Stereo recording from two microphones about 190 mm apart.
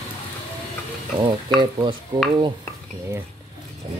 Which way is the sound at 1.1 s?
25° right (ahead or behind).